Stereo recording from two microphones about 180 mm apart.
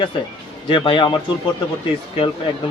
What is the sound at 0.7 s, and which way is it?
Speech, 30° left (ahead or behind).